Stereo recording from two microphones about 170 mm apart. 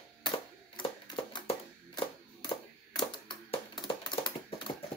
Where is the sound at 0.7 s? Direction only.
30° left (ahead or behind).